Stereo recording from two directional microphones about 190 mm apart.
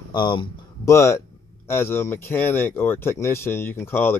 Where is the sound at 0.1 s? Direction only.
25° left (ahead or behind).